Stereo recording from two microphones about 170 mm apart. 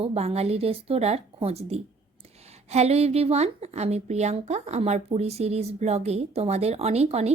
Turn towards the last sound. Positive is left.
turn(degrees=-40)  # may be behind; listen again after turning